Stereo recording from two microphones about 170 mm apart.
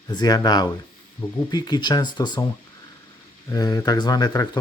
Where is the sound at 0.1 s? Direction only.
25° left (ahead or behind).